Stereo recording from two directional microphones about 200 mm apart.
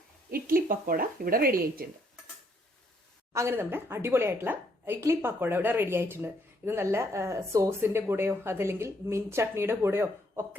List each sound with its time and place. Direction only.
0.3 s a woman's voice: 45° right (ahead or behind)
3.3 s a woman's voice: 15° right (ahead or behind)